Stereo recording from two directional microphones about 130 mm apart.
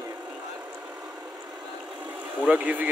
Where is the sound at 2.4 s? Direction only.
10° right (ahead or behind).